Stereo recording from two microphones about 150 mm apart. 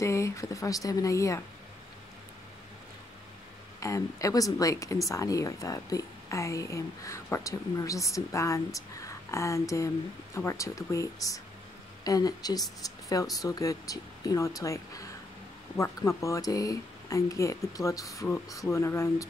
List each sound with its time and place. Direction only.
0.0 s a woman's voice: 20° left (ahead or behind)
3.8 s a woman's voice: 20° left (ahead or behind)